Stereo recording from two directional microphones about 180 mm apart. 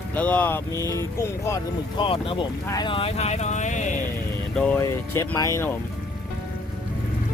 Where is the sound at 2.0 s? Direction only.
30° left (ahead or behind).